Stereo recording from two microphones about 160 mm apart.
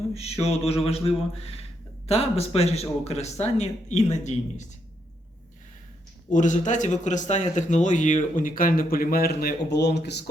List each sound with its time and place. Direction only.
0.1 s speech: 40° left (ahead or behind)
6.3 s speech: 50° left (ahead or behind); by 10.2 s 90° left